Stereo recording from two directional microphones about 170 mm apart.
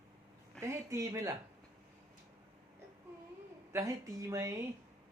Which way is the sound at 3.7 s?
20° right (ahead or behind).